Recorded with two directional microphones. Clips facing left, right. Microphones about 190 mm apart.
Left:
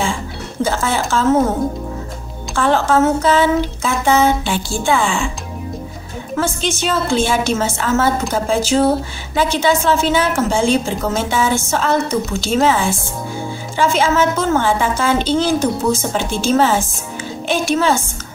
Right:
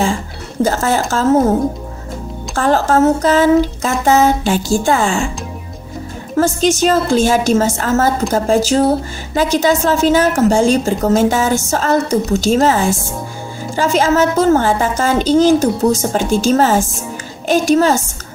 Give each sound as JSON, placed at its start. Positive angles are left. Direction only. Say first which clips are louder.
{"t": 0.6, "sound": "a woman's voice", "louder": "right 4 dB", "side_deg": -40}
{"t": 2.5, "sound": "a woman's voice", "louder": "right 1 dB", "side_deg": -40}
{"t": 6.3, "sound": "a woman's voice", "louder": "right 6 dB", "side_deg": -40}